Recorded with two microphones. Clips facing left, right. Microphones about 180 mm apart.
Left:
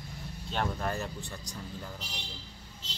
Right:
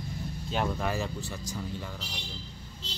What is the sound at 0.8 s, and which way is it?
Speech, 90° right.